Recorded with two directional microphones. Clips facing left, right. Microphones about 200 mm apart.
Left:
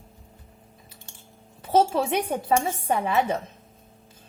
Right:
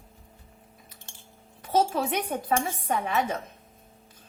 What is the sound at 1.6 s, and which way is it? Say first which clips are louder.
Speech: left 4 dB; 30° left (ahead or behind).